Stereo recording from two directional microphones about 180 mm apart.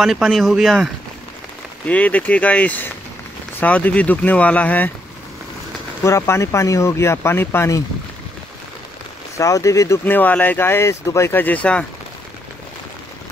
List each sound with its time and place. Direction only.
0.0 s speech: centre (ahead or behind)
1.9 s speech: 10° left (ahead or behind)
6.0 s speech: 15° left (ahead or behind)
9.4 s speech: 15° left (ahead or behind)